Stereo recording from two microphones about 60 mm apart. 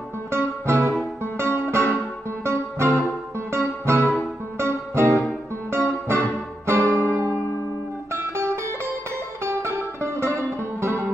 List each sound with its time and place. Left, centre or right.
0.3 s music: right